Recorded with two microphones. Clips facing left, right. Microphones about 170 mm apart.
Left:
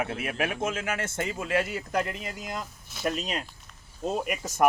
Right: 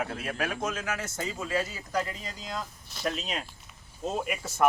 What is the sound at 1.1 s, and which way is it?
Speech, 60° left (ahead or behind).